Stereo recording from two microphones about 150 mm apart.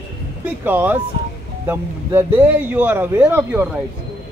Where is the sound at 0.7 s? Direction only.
10° right (ahead or behind).